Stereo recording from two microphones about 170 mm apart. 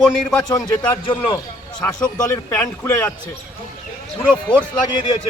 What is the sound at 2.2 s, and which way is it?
Speech, 20° left (ahead or behind).